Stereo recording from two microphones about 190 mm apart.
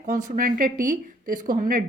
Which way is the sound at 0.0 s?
45° right (ahead or behind).